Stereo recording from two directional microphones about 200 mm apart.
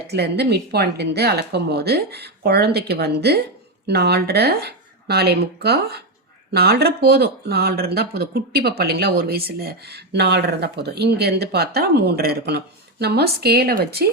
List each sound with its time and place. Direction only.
0.1 s speech: 55° right (ahead or behind)